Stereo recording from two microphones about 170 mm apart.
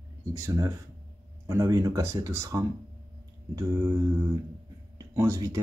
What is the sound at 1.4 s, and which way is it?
Speech, 15° right (ahead or behind).